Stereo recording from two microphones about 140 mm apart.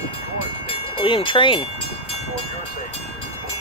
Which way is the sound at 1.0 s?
35° left (ahead or behind).